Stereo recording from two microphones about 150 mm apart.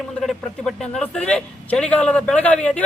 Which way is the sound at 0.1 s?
Centre (ahead or behind).